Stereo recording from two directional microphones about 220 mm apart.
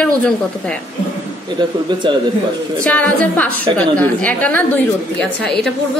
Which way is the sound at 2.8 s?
5° left (ahead or behind).